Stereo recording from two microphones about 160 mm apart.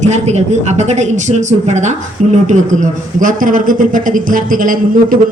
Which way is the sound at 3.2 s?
55° right (ahead or behind).